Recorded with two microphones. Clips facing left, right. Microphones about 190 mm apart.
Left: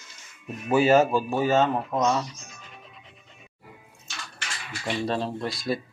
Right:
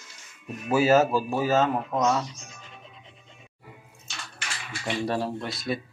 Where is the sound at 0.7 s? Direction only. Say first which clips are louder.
Left 1 dB; 5° right (ahead or behind).